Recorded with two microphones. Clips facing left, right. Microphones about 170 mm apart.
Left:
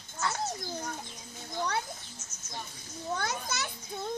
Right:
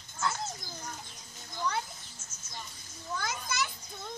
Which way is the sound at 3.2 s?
60° left (ahead or behind).